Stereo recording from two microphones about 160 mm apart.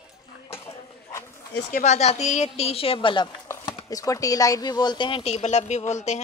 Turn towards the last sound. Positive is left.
turn(degrees=45)  # may be behind; listen again after turning